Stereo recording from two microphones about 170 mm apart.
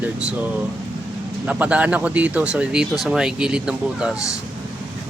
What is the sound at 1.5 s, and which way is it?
Speech, 10° right (ahead or behind).